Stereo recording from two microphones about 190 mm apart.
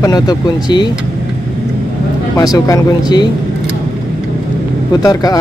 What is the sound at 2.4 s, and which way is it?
Speech, 20° left (ahead or behind).